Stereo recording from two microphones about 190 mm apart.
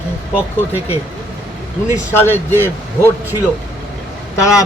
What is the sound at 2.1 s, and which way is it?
A man's voice, 10° left (ahead or behind).